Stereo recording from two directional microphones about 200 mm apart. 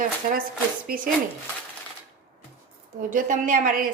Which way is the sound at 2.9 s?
40° right (ahead or behind).